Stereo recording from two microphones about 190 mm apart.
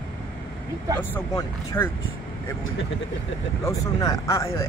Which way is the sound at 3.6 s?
15° left (ahead or behind).